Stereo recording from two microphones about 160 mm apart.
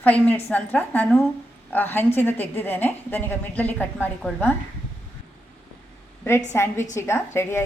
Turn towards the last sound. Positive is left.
turn(degrees=15)  # may be behind; listen again after turning